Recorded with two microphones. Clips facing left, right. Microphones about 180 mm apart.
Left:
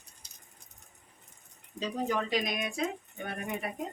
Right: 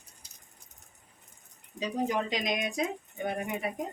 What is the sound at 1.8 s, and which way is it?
Speech, 15° right (ahead or behind).